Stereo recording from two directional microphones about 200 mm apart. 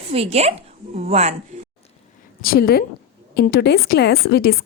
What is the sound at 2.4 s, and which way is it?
Speech, 50° left (ahead or behind).